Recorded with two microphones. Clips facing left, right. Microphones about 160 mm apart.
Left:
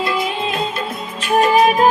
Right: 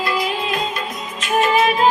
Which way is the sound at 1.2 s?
35° left (ahead or behind).